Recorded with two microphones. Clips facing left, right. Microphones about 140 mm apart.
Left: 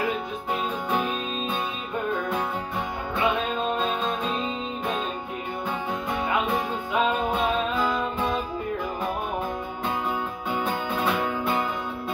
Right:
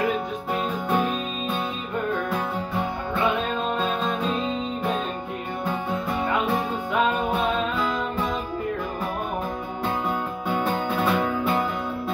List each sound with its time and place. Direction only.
10.5 s music: centre (ahead or behind)